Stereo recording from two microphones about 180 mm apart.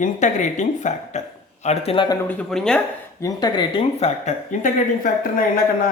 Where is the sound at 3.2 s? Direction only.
20° left (ahead or behind); by 5.1 s 45° left (ahead or behind).